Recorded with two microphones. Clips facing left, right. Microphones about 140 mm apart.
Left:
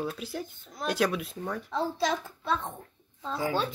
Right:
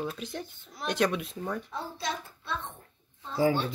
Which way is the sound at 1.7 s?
90° left.